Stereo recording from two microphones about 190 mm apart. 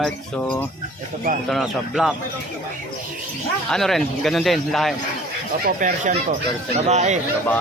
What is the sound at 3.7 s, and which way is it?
A man's voice, centre (ahead or behind).